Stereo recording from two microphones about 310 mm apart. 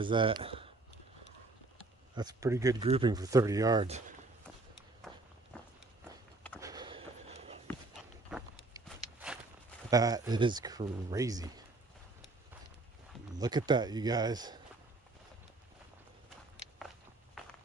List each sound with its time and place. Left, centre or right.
0.0 s speech: centre
2.1 s speech: centre
5.0 s walk: centre
6.6 s a sound: centre
8.3 s walk: centre
9.8 s speech: centre
13.4 s speech: centre